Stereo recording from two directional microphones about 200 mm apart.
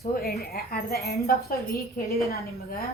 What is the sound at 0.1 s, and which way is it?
Speech, 50° left (ahead or behind).